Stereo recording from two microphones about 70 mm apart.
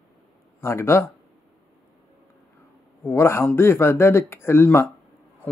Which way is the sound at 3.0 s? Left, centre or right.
Left.